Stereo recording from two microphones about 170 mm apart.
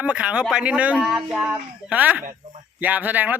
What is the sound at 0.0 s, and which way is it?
A man's voice, 5° right (ahead or behind).